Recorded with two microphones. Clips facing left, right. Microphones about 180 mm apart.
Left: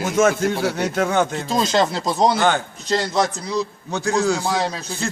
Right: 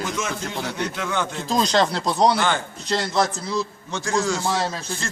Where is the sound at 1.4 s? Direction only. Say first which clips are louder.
Left 1 dB; centre (ahead or behind).